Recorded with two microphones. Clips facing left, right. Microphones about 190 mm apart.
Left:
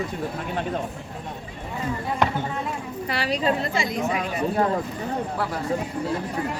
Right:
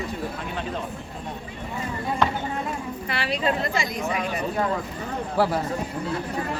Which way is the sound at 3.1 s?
40° left (ahead or behind).